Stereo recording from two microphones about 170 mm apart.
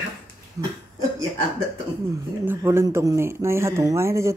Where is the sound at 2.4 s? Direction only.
15° right (ahead or behind).